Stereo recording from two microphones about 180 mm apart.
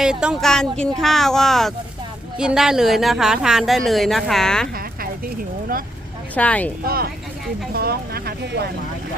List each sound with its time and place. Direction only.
0.0 s speech: 5° right (ahead or behind)
6.3 s speech: 10° left (ahead or behind)
6.8 s speech: 55° right (ahead or behind)